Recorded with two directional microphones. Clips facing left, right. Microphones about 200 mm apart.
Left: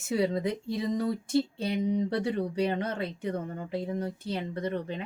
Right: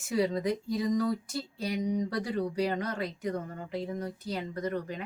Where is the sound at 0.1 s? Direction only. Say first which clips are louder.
Left 1 dB; 25° left (ahead or behind).